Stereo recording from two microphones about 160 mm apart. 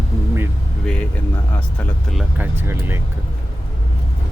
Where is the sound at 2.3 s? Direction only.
10° right (ahead or behind).